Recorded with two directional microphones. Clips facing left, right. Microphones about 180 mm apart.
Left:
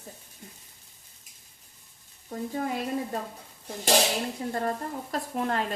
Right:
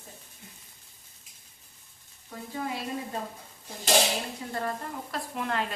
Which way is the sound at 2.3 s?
45° left (ahead or behind).